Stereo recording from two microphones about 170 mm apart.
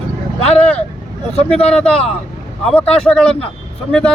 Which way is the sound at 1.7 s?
5° left (ahead or behind).